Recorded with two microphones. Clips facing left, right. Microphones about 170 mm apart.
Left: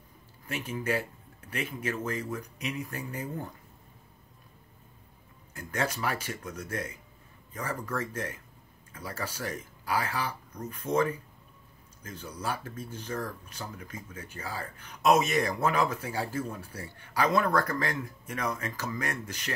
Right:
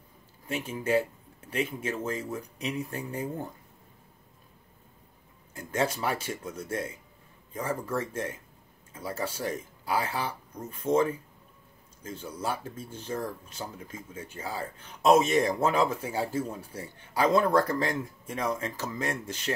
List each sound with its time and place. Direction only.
0.5 s speech: 25° right (ahead or behind)
5.5 s speech: 25° right (ahead or behind)